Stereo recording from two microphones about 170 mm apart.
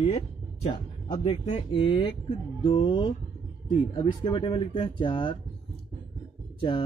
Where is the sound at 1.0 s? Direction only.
45° left (ahead or behind).